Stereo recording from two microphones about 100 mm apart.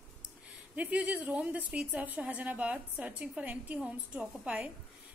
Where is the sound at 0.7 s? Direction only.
15° right (ahead or behind).